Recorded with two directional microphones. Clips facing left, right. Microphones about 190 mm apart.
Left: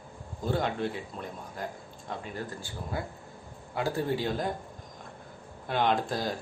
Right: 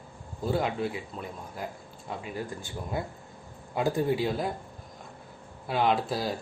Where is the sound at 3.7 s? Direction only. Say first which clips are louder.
Right 3 dB; 15° right (ahead or behind).